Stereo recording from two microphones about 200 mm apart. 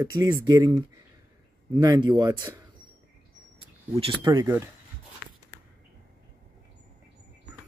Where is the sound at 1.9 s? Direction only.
20° right (ahead or behind).